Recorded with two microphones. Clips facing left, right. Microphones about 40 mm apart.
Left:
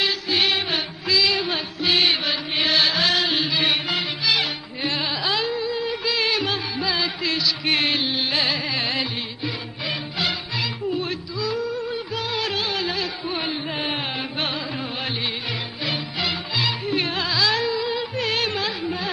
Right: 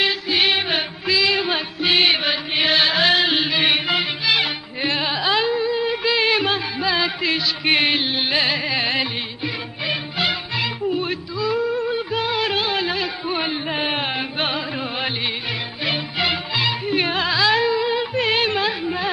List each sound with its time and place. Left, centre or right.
0.0 s music: centre
5.0 s music: right
15.8 s music: right